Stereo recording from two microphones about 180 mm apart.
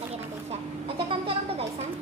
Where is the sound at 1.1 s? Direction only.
30° right (ahead or behind).